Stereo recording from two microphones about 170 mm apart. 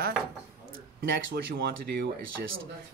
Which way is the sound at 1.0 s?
90° right.